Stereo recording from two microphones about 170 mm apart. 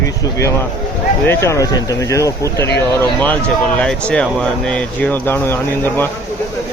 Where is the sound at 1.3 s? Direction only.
15° left (ahead or behind).